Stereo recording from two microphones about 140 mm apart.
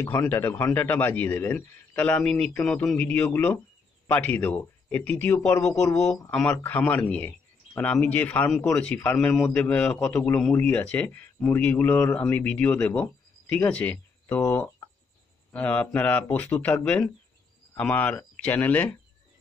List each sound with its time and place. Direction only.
0.0 s speech: 15° left (ahead or behind)
5.9 s speech: 20° left (ahead or behind)
6.3 s speech: 10° left (ahead or behind)
15.5 s speech: 10° left (ahead or behind)